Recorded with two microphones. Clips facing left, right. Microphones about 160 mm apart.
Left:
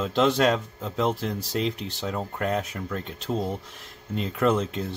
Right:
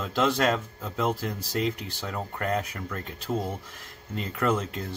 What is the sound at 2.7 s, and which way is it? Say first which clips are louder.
Speech: left 3 dB; 20° left (ahead or behind).